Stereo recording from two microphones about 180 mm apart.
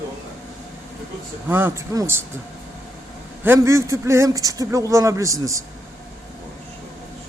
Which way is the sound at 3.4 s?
15° right (ahead or behind).